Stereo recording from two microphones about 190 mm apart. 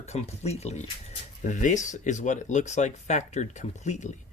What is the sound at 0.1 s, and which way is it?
Speech, 35° left (ahead or behind).